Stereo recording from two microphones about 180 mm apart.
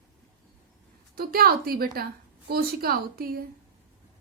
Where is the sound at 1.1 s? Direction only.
55° right (ahead or behind).